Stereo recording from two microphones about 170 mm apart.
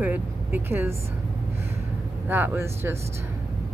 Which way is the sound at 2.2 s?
10° right (ahead or behind).